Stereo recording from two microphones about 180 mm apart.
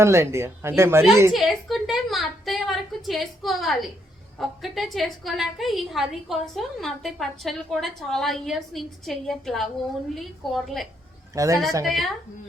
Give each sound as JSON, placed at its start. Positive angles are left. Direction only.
{"t": 0.0, "sound": "speech", "side_deg": -15}
{"t": 1.3, "sound": "a woman's voice", "side_deg": 0}
{"t": 11.3, "sound": "speech", "side_deg": -15}
{"t": 11.9, "sound": "a woman's voice", "side_deg": 0}